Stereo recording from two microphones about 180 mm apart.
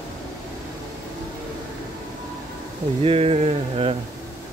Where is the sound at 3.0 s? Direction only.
35° right (ahead or behind).